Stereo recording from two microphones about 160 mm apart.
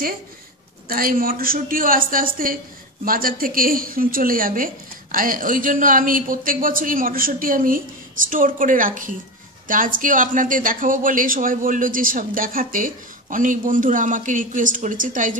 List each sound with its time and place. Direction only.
0.8 s speech: 65° right (ahead or behind)